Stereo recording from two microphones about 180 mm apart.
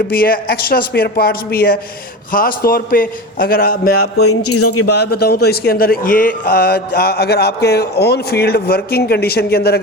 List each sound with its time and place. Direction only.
0.1 s a man's voice: 55° left (ahead or behind)